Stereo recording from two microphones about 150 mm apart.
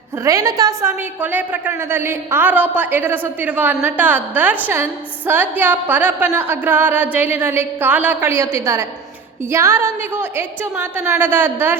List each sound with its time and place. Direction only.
0.3 s a woman's voice: 20° right (ahead or behind)